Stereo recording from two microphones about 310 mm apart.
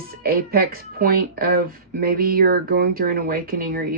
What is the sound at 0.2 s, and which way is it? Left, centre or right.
Speech, right.